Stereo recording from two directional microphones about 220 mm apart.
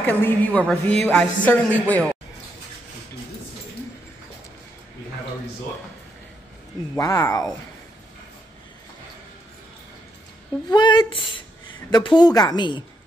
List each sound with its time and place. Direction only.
0.0 s a woman's voice: 5° left (ahead or behind)
7.0 s speech: 15° left (ahead or behind)
10.7 s speech: 20° left (ahead or behind)